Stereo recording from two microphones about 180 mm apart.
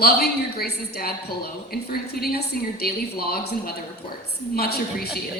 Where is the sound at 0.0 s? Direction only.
60° left (ahead or behind).